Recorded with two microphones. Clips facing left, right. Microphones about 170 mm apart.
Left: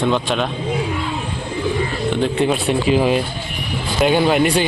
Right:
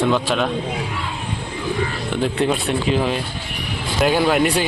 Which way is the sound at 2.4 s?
5° left (ahead or behind).